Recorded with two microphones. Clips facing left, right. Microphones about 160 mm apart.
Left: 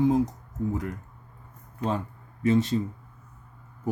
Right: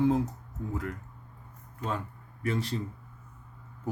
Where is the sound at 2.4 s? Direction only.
25° left (ahead or behind).